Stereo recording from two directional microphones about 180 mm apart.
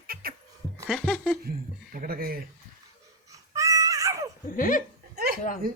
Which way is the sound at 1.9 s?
55° right (ahead or behind).